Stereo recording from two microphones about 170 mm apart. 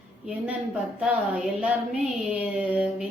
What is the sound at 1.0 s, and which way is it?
Speech, 5° right (ahead or behind).